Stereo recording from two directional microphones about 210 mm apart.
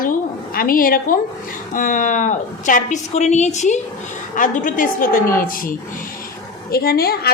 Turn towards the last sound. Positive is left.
turn(degrees=50)  # may be behind; listen again after turning